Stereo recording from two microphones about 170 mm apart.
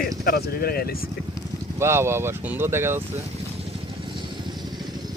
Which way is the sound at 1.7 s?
15° right (ahead or behind).